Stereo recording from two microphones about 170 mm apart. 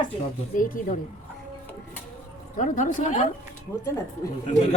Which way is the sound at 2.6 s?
45° left (ahead or behind).